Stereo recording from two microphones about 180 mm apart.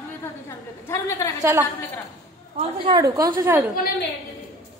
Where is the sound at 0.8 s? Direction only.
15° left (ahead or behind).